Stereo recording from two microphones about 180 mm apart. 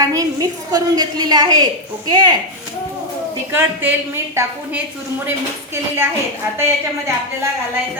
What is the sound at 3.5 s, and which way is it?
A woman's voice, 10° right (ahead or behind).